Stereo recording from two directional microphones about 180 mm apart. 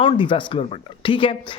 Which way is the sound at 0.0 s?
30° left (ahead or behind).